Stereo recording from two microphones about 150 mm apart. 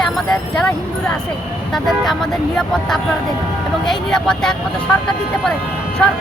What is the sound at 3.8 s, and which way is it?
Speech, 5° left (ahead or behind).